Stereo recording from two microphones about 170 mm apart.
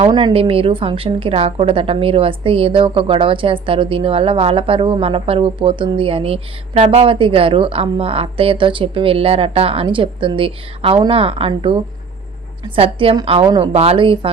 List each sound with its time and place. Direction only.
0.0 s a woman's voice: 30° right (ahead or behind)